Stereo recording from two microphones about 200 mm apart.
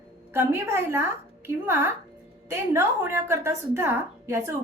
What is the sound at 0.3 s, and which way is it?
A woman's voice, 10° right (ahead or behind).